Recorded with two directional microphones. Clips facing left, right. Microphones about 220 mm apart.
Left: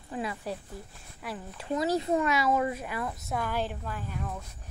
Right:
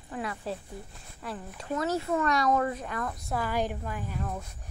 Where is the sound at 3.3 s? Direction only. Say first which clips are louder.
Right 2 dB; 10° right (ahead or behind).